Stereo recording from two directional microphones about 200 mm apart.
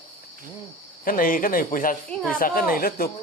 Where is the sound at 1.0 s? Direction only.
45° left (ahead or behind).